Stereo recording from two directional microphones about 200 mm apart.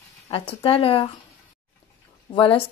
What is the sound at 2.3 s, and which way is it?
Speech, 25° left (ahead or behind).